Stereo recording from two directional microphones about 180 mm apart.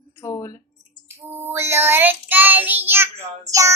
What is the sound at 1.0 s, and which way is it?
Child singing, 10° right (ahead or behind).